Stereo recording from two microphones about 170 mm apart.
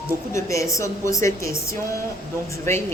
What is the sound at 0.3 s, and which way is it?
Speech, 15° left (ahead or behind).